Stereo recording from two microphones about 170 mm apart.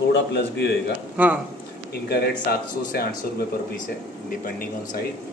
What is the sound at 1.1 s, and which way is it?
Speech, 10° right (ahead or behind).